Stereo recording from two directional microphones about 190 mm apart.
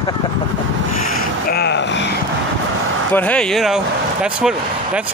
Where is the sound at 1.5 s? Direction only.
60° left (ahead or behind).